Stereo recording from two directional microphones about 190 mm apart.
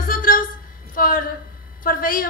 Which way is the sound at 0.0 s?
50° left (ahead or behind).